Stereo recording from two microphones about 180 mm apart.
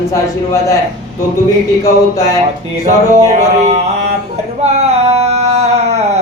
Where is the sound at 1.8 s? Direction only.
20° left (ahead or behind).